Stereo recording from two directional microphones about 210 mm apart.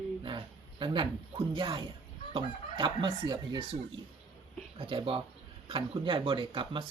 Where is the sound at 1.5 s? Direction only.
25° right (ahead or behind).